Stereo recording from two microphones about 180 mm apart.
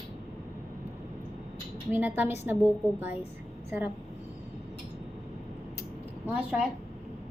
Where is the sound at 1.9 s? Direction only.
10° right (ahead or behind).